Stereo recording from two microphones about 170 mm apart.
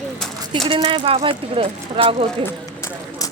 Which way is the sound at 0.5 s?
30° right (ahead or behind).